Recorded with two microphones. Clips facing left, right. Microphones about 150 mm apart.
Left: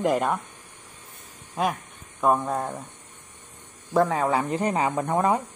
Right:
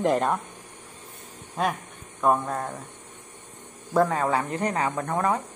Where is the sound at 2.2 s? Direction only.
5° left (ahead or behind).